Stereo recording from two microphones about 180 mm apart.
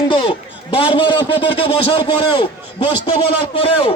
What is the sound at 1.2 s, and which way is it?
Speech, 75° left (ahead or behind).